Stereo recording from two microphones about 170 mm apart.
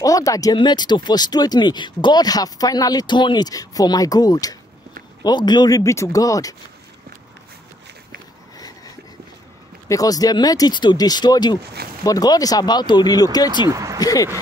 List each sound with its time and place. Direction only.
0.0 s speech: 20° left (ahead or behind)
9.8 s speech: 20° left (ahead or behind)
11.6 s speech: 70° right (ahead or behind)
12.0 s speech: 20° left (ahead or behind)
13.7 s speech: 20° right (ahead or behind)
13.9 s speech: 20° left (ahead or behind)